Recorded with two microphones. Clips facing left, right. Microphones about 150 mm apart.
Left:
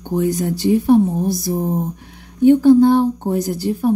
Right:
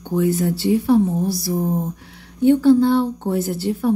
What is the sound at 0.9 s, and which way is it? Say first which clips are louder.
Speech: left 3 dB; 20° left (ahead or behind).